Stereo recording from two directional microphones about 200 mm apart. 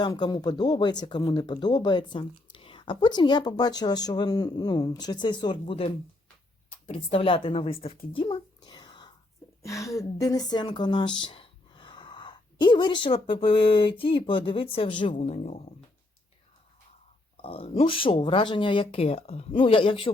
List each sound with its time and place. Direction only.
0.0 s speech: 20° left (ahead or behind)
8.1 s a sound: 25° left (ahead or behind)
9.6 s a woman's voice: 15° left (ahead or behind); by 15.6 s 35° left (ahead or behind)
17.3 s speech: 30° left (ahead or behind)